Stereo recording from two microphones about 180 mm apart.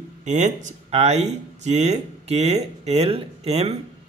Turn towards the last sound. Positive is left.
turn(degrees=-35)  # may be behind; listen again after turning